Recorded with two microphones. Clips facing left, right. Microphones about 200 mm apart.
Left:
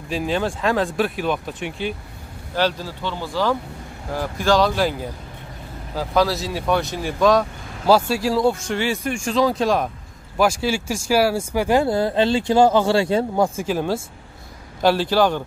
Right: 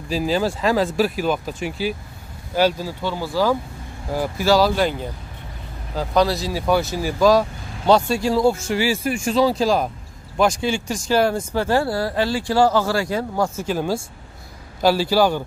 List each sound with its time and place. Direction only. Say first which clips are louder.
0.1 s speech: right 2 dB; centre (ahead or behind)
5.9 s speech: right 1 dB; 5° left (ahead or behind); by 13.5 s 25° left (ahead or behind)
13.6 s speech: even; centre (ahead or behind)